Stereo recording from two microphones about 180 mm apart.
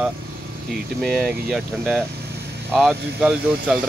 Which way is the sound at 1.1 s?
Centre (ahead or behind).